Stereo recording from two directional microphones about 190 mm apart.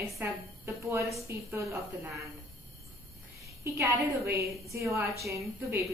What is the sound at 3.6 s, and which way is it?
A woman's voice, 15° right (ahead or behind).